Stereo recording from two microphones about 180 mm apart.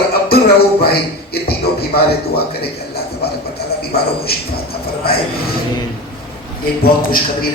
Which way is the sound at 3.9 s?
60° left (ahead or behind).